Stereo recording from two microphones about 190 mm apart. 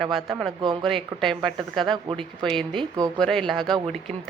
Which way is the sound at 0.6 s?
25° right (ahead or behind).